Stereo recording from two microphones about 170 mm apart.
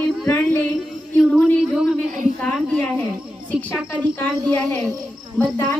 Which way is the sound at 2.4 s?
5° left (ahead or behind).